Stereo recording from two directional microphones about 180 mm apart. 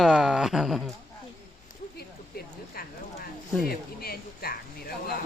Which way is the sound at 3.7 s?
55° left (ahead or behind).